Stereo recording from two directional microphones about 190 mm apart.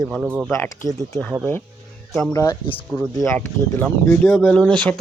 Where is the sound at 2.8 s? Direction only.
5° left (ahead or behind).